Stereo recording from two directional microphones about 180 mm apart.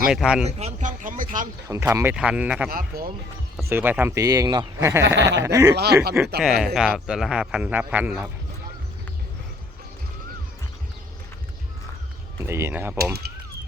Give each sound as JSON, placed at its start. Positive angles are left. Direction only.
{"t": 0.1, "sound": "speech", "side_deg": -5}
{"t": 0.4, "sound": "a sound", "side_deg": -40}
{"t": 1.6, "sound": "speech", "side_deg": -15}
{"t": 2.6, "sound": "speech", "side_deg": -55}
{"t": 3.6, "sound": "speech", "side_deg": -10}
{"t": 5.7, "sound": "speech", "side_deg": -65}
{"t": 6.4, "sound": "speech", "side_deg": 0}
{"t": 12.4, "sound": "speech", "side_deg": -15}